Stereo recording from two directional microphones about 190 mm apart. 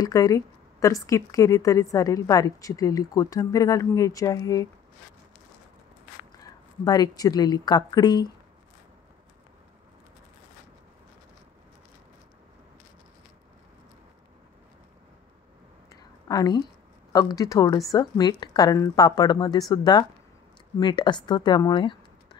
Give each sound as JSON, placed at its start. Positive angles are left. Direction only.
{"t": 0.0, "sound": "a woman's voice", "side_deg": 15}
{"t": 6.8, "sound": "speech", "side_deg": 20}
{"t": 15.9, "sound": "a sound", "side_deg": 20}
{"t": 17.1, "sound": "speech", "side_deg": 20}